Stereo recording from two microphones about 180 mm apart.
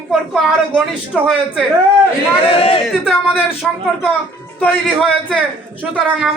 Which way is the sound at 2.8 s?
Centre (ahead or behind).